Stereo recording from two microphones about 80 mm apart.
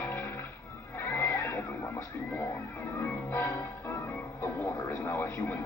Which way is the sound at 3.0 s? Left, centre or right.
Left.